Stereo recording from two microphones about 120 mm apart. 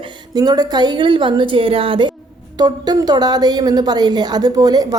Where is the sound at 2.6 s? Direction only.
35° right (ahead or behind).